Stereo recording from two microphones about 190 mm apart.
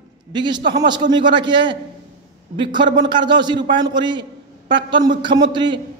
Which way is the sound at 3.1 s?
25° right (ahead or behind).